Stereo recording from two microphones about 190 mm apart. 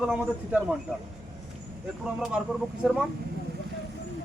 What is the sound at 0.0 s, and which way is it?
Speech, 5° right (ahead or behind).